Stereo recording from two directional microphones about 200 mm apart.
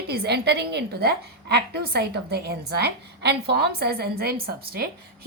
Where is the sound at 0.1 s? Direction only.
55° right (ahead or behind).